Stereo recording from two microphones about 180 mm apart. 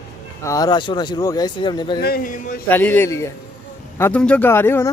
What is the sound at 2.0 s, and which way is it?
Speech, 60° left (ahead or behind).